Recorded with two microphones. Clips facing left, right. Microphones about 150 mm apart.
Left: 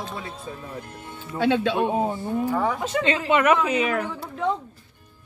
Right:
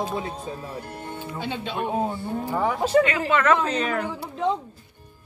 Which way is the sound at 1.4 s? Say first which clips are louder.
Left 9 dB; 90° left.